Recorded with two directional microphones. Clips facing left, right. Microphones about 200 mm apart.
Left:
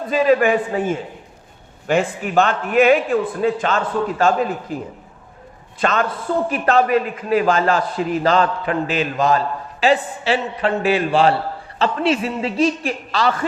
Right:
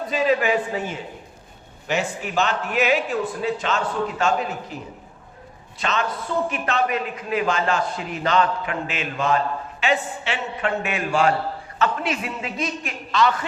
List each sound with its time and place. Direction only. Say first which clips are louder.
0.1 s speech: left 6 dB; 50° left (ahead or behind)
5.8 s speech: left 6 dB; 50° left (ahead or behind)
6.5 s a man's voice: left 7 dB; 40° left (ahead or behind)